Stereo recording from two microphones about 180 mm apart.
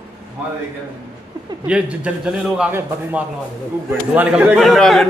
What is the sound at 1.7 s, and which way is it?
A man's voice, 5° right (ahead or behind).